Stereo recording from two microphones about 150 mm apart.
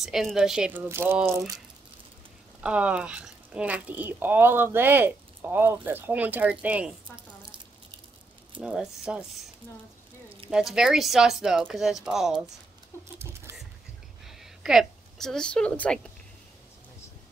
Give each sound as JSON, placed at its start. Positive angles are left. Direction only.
{"t": 0.0, "sound": "speech", "side_deg": 0}
{"t": 2.6, "sound": "speech", "side_deg": -5}
{"t": 8.5, "sound": "speech", "side_deg": -5}
{"t": 10.5, "sound": "speech", "side_deg": -5}
{"t": 13.2, "sound": "a sound", "side_deg": -15}
{"t": 14.2, "sound": "a woman's voice", "side_deg": -5}